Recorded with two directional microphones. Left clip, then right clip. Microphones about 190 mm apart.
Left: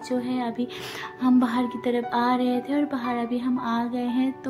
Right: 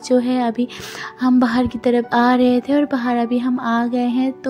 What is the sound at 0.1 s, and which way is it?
Speech, 30° right (ahead or behind).